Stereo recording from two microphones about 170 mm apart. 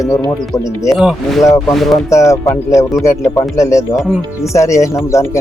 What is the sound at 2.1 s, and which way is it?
Speech, 20° left (ahead or behind).